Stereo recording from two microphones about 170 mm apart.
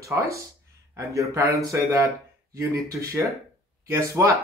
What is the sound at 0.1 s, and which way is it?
A man's voice, 15° right (ahead or behind).